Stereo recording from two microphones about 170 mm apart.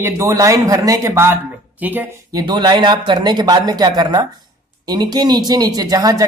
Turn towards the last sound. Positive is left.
turn(degrees=-20)  # may be behind; listen again after turning